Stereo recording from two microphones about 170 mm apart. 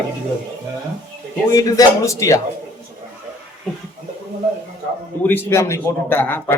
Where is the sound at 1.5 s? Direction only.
20° left (ahead or behind).